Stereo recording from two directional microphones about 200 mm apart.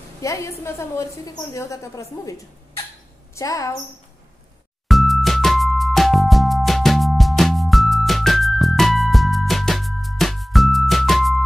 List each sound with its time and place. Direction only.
0.2 s a woman's voice: 15° left (ahead or behind)
3.3 s a woman's voice: 15° left (ahead or behind)
4.8 s music: centre (ahead or behind)